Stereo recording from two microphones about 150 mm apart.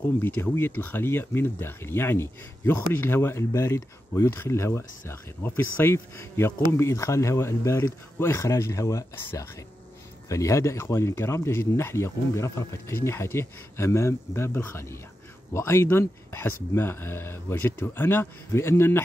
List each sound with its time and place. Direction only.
0.2 s speech: 15° left (ahead or behind)